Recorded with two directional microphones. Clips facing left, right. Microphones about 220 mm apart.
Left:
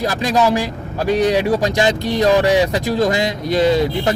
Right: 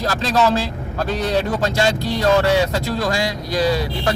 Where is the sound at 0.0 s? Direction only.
15° left (ahead or behind).